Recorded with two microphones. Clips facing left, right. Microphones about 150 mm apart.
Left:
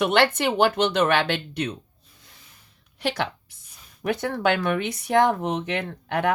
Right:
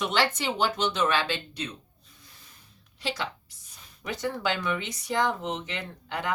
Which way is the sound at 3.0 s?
65° left (ahead or behind).